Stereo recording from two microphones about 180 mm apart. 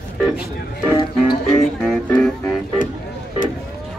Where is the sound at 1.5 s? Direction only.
Centre (ahead or behind).